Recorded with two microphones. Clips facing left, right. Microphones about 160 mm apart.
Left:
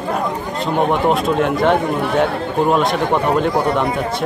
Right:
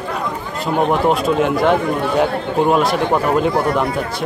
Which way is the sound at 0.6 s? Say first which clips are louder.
Right 1 dB; centre (ahead or behind).